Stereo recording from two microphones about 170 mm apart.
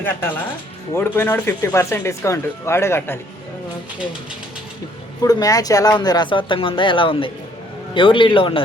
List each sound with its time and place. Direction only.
0.0 s speech: 10° left (ahead or behind)
5.2 s a man's voice: 20° left (ahead or behind)